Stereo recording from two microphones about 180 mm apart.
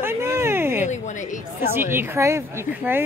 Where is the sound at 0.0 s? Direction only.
15° right (ahead or behind).